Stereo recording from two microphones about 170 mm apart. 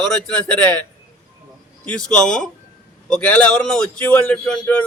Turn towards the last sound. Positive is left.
turn(degrees=5)  # may be behind; listen again after turning